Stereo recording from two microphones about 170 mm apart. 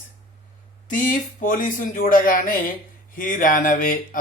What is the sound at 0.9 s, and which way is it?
Speech, 50° left (ahead or behind).